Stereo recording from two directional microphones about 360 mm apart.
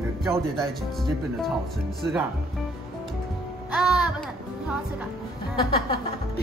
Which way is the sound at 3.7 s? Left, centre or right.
Centre.